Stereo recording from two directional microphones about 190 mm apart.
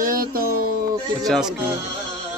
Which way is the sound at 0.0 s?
45° right (ahead or behind).